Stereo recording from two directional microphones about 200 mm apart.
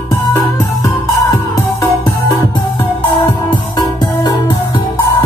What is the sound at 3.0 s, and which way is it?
Music, 25° left (ahead or behind).